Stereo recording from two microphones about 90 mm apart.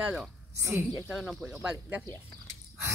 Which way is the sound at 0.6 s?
35° right (ahead or behind).